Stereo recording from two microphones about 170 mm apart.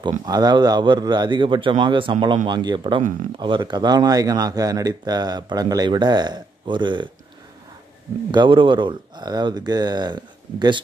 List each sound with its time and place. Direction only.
0.2 s speech: 25° right (ahead or behind)
8.3 s speech: 30° right (ahead or behind)